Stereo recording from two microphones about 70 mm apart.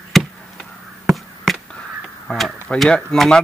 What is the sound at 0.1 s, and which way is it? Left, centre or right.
Chop, centre.